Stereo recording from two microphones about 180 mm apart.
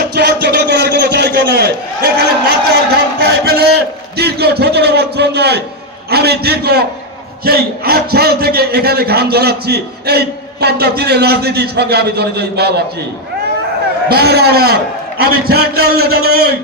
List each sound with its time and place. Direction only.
0.1 s a sound: 65° right (ahead or behind)
6.1 s a man's voice: 65° right (ahead or behind)
14.1 s a man's voice: 60° right (ahead or behind)